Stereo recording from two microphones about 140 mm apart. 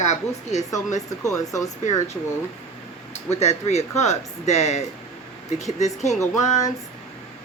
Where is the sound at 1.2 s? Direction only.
25° left (ahead or behind).